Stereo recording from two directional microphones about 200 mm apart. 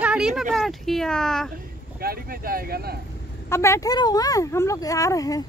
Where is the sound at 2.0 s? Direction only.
50° right (ahead or behind).